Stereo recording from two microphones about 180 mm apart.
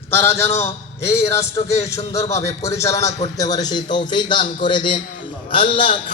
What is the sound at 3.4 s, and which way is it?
Speech, 20° left (ahead or behind).